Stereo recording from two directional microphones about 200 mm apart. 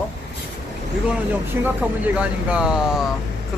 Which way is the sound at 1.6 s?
5° right (ahead or behind).